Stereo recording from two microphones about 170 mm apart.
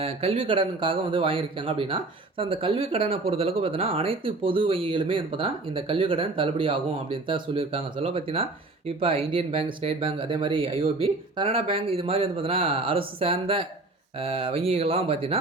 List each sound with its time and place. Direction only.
0.0 s speech: 35° right (ahead or behind)